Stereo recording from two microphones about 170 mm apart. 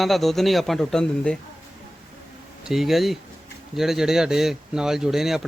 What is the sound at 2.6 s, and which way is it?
Speech, centre (ahead or behind).